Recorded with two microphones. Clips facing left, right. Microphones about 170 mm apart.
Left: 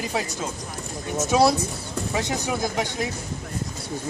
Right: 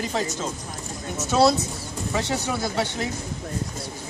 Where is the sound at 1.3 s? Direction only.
15° left (ahead or behind).